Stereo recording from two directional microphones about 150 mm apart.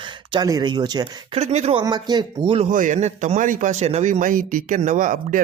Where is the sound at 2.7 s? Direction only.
60° right (ahead or behind).